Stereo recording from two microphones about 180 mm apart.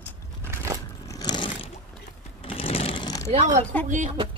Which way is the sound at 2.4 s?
30° left (ahead or behind).